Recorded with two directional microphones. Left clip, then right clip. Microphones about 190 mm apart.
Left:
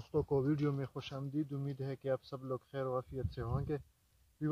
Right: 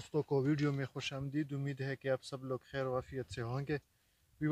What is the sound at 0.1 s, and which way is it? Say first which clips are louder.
Speech: even; 5° right (ahead or behind).